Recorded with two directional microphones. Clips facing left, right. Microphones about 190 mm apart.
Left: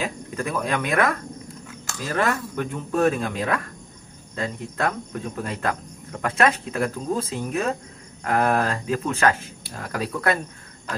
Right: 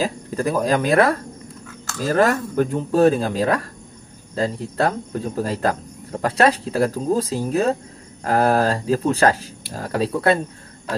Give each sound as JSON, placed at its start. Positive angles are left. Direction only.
{"t": 0.0, "sound": "speech", "side_deg": -35}